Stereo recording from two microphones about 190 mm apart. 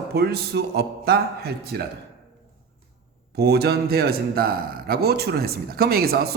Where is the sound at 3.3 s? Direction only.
55° right (ahead or behind).